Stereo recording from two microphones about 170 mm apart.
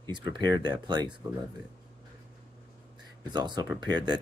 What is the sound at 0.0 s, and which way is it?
Speech, 25° right (ahead or behind).